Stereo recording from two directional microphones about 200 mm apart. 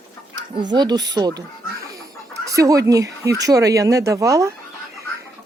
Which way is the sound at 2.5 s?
15° right (ahead or behind).